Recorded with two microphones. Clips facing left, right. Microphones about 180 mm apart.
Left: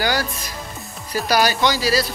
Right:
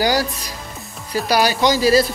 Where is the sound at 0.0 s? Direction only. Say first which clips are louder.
Right 4 dB; 35° right (ahead or behind).